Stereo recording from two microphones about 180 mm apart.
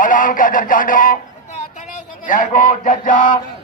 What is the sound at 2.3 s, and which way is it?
Speech, 50° left (ahead or behind).